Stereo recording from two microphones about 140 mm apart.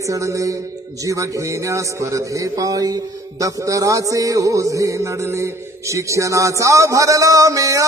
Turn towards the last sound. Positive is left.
turn(degrees=-25)  # may be behind; listen again after turning